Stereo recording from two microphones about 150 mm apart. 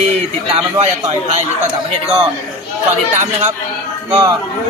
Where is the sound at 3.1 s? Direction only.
50° right (ahead or behind).